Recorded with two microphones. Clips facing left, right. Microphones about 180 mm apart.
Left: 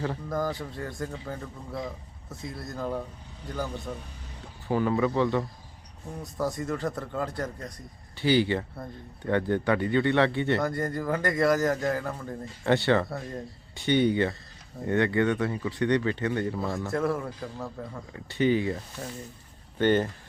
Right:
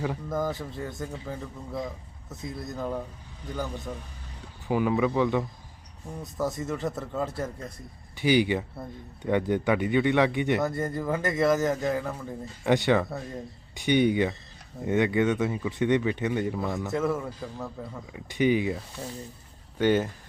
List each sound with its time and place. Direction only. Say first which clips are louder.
0.0 s a man's voice: right 1 dB; 5° right (ahead or behind)
8.1 s speech: right 1 dB; 15° right (ahead or behind)
10.7 s a man's voice: even; 5° right (ahead or behind)
12.6 s speech: right 1 dB; 15° right (ahead or behind)
16.7 s a man's voice: even; centre (ahead or behind)
18.3 s speech: right 1 dB; 15° right (ahead or behind)
19.8 s speech: even; 10° right (ahead or behind)